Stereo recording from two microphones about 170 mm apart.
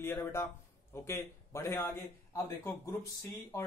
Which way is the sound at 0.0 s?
15° left (ahead or behind).